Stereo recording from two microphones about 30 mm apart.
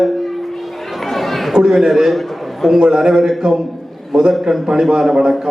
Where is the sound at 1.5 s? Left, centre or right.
Centre.